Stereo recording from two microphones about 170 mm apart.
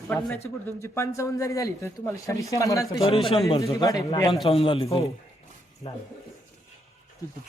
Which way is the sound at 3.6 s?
20° left (ahead or behind).